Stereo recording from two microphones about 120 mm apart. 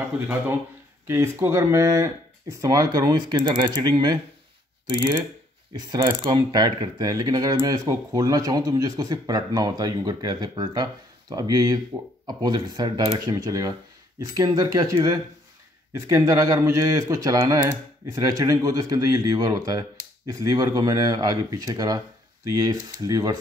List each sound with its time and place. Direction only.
1.0 s speech: 25° right (ahead or behind)
5.8 s mechanisms: 35° right (ahead or behind)
15.9 s speech: 25° right (ahead or behind)